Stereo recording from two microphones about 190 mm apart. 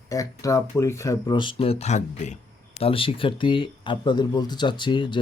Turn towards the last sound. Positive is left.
turn(degrees=25)  # may be behind; listen again after turning